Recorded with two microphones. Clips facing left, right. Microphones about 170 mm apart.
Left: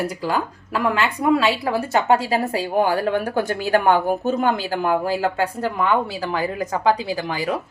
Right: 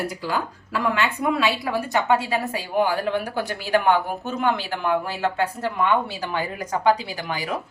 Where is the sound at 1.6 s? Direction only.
35° left (ahead or behind).